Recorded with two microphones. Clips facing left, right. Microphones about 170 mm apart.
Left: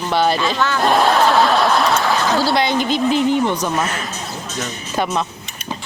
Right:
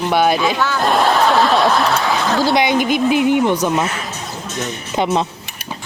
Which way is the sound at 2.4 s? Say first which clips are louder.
Right 2 dB; 15° right (ahead or behind).